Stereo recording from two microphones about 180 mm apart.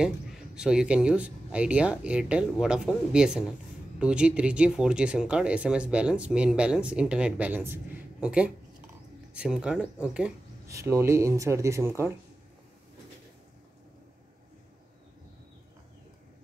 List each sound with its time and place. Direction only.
0.0 s speech: 5° right (ahead or behind)